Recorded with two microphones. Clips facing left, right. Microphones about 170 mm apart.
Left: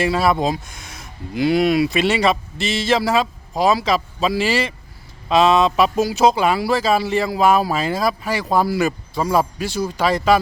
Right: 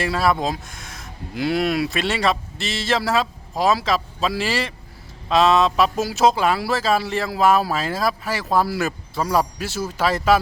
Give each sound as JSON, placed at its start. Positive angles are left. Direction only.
{"t": 0.0, "sound": "speech", "side_deg": 0}